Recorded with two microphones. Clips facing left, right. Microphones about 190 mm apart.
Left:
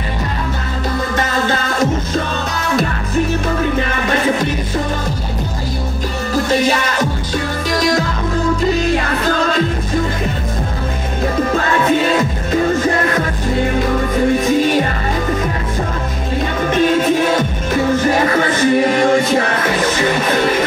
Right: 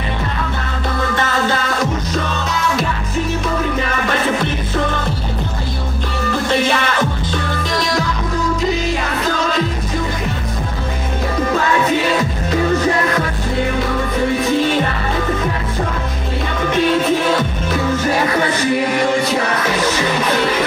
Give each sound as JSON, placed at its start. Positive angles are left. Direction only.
{"t": 18.6, "sound": "music", "side_deg": 50}